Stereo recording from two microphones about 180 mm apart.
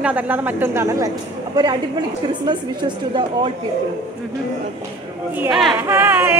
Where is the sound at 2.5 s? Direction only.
25° right (ahead or behind).